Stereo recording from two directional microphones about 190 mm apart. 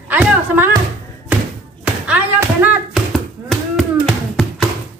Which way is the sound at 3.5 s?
Centre (ahead or behind).